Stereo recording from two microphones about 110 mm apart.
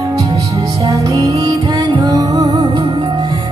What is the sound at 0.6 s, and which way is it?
Music, 35° right (ahead or behind).